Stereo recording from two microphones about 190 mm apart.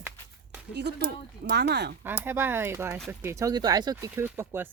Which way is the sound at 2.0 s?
10° right (ahead or behind).